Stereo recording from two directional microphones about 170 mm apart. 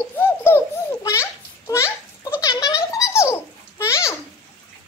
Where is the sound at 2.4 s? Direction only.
20° left (ahead or behind).